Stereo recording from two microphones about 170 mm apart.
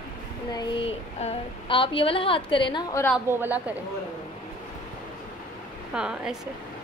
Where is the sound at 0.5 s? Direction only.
25° left (ahead or behind).